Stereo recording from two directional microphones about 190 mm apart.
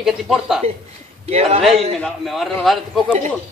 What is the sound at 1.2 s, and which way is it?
Speech, 35° right (ahead or behind).